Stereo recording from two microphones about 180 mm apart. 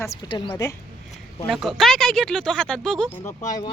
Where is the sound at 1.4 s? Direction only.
Centre (ahead or behind).